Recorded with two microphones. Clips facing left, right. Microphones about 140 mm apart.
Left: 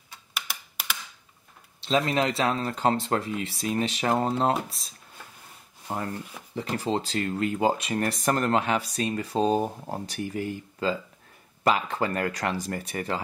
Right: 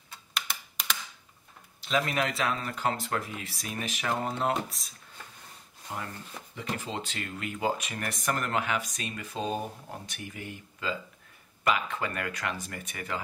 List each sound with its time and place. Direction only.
0.3 s computer keyboard: 5° left (ahead or behind)
1.8 s speech: 30° left (ahead or behind)
6.5 s speech: 35° left (ahead or behind)